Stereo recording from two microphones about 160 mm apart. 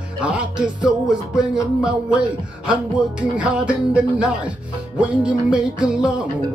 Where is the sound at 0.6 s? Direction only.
30° right (ahead or behind).